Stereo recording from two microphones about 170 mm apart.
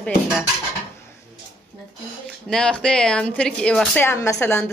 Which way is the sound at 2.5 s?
5° left (ahead or behind).